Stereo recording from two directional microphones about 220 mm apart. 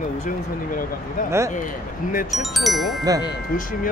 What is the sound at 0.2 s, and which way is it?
Speech, 40° left (ahead or behind).